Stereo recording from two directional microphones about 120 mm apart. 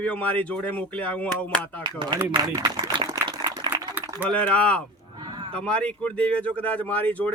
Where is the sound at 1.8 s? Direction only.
40° right (ahead or behind).